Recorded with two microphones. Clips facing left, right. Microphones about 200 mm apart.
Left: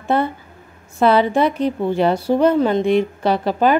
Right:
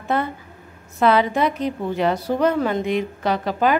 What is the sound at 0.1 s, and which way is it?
A woman's voice, 30° left (ahead or behind).